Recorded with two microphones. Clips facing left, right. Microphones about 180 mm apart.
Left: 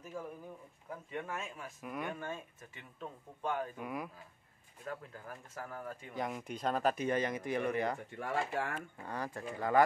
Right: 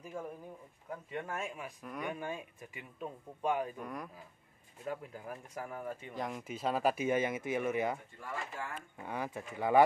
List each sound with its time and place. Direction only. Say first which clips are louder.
1.1 s speech: right 2 dB; 5° right (ahead or behind)
1.8 s speech: left 1 dB; centre (ahead or behind)
2.1 s speech: right 2 dB; 15° right (ahead or behind)
3.7 s speech: left 2 dB; 5° left (ahead or behind)
4.8 s speech: right 4 dB; 10° right (ahead or behind)
8.1 s speech: left 7 dB; 70° left (ahead or behind)
9.0 s speech: right 2 dB; 5° right (ahead or behind)